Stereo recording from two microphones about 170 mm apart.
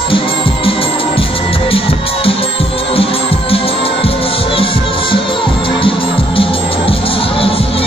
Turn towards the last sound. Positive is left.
turn(degrees=35)  # may be behind; listen again after turning